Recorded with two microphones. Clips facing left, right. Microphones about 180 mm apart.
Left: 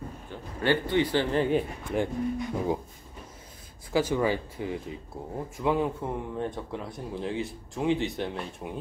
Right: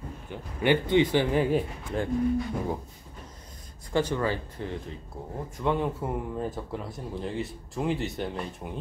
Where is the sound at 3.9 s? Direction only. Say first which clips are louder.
Left 1 dB; 10° left (ahead or behind).